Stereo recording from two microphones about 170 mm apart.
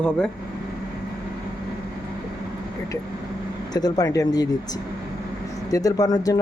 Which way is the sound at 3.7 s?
25° left (ahead or behind).